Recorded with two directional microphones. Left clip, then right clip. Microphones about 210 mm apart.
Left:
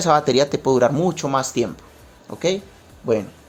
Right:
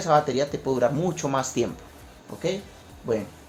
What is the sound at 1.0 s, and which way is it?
Speech, 20° left (ahead or behind).